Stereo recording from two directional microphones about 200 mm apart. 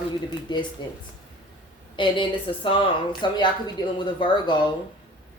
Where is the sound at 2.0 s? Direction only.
25° left (ahead or behind).